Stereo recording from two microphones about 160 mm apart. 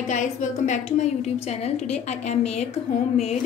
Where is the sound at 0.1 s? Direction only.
50° left (ahead or behind).